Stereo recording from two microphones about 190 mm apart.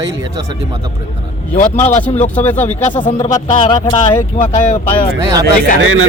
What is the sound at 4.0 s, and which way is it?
Speech, 40° left (ahead or behind).